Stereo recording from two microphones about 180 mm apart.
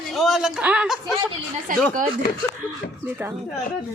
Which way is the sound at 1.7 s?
50° right (ahead or behind).